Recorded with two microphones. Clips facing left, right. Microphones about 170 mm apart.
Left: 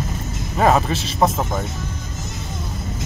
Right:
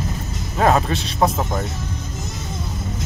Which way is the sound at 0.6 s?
Centre (ahead or behind).